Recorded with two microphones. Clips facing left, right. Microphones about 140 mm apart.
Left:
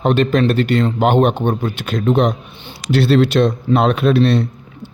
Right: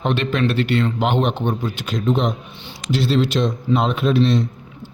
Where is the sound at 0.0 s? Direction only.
45° left (ahead or behind).